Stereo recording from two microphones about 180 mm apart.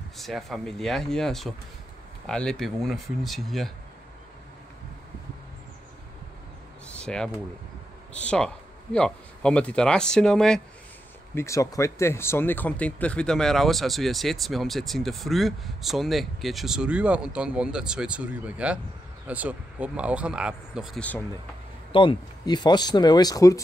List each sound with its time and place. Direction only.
0.2 s speech: centre (ahead or behind)
6.9 s speech: 5° left (ahead or behind)
11.3 s speech: 15° left (ahead or behind); by 21.0 s 5° right (ahead or behind)
21.9 s speech: 25° left (ahead or behind)